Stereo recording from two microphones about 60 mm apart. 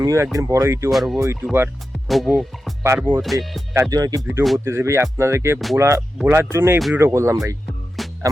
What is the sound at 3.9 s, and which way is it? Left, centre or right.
Speech, right.